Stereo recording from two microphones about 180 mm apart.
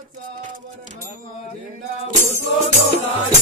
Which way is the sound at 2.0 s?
40° right (ahead or behind).